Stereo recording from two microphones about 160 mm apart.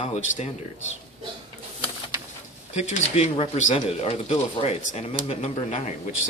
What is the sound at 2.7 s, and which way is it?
Speech, 40° left (ahead or behind).